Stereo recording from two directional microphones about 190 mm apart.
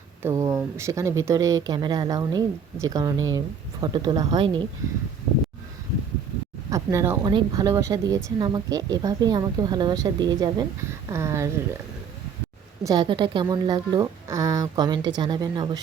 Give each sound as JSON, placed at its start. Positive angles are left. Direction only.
{"t": 0.2, "sound": "speech", "side_deg": -15}
{"t": 6.7, "sound": "speech", "side_deg": -15}
{"t": 12.8, "sound": "speech", "side_deg": -20}